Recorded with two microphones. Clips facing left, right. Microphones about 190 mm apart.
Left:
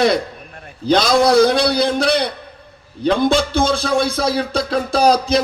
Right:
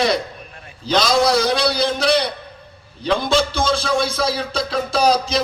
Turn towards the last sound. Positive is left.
turn(degrees=55)  # may be behind; listen again after turning